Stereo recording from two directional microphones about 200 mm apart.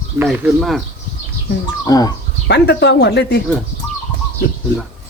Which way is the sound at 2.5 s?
60° left (ahead or behind).